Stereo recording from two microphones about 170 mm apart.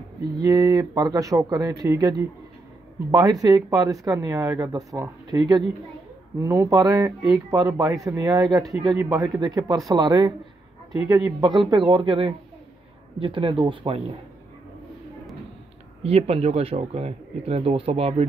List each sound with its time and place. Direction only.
0.4 s speech: 20° right (ahead or behind)
16.0 s speech: 35° right (ahead or behind)